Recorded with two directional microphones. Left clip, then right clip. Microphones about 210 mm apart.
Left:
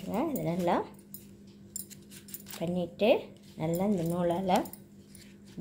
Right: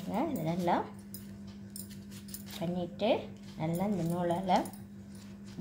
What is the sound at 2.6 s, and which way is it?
Speech, 30° left (ahead or behind).